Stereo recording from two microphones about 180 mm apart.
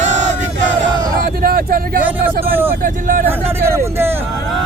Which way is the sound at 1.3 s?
55° right (ahead or behind).